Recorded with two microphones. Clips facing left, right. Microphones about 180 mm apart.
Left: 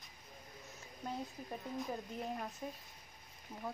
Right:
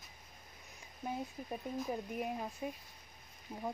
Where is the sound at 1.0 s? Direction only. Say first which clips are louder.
Right 2 dB; 5° right (ahead or behind).